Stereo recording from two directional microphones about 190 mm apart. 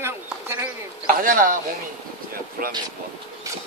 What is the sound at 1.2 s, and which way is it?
Speech, 45° right (ahead or behind).